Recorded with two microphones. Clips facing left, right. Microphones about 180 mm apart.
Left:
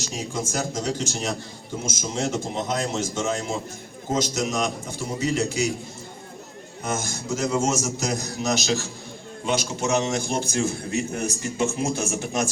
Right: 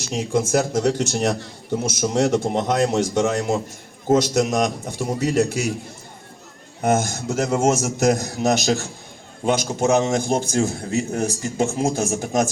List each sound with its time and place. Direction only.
0.0 s a man's voice: 60° right (ahead or behind)
4.1 s a man's voice: 60° right (ahead or behind)
6.8 s a man's voice: 60° right (ahead or behind)
9.8 s a man's voice: 45° right (ahead or behind)